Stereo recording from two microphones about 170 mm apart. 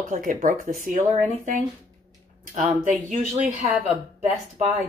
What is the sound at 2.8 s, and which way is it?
Speech, 45° right (ahead or behind).